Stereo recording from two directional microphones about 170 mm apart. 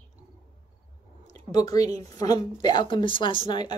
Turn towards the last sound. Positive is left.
turn(degrees=25)  # may be behind; listen again after turning